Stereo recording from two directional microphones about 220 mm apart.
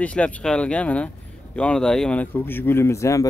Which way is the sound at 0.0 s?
5° left (ahead or behind).